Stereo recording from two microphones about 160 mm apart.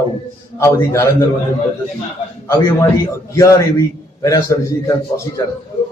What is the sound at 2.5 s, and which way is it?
A man's voice, 20° left (ahead or behind).